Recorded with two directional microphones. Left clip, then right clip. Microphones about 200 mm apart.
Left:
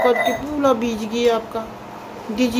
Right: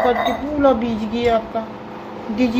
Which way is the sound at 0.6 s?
20° left (ahead or behind).